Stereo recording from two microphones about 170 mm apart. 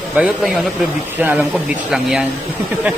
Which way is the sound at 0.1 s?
5° right (ahead or behind).